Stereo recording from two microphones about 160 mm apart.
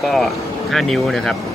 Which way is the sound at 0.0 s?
Centre (ahead or behind).